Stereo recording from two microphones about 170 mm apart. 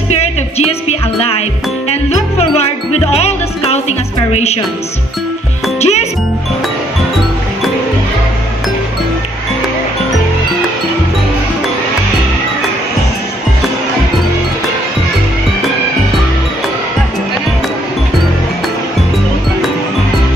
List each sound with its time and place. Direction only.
0.1 s music: 40° left (ahead or behind)
4.3 s a woman's voice: 40° left (ahead or behind)
5.8 s music: 40° left (ahead or behind)